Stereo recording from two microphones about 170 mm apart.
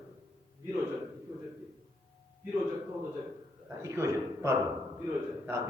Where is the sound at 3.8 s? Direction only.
15° right (ahead or behind).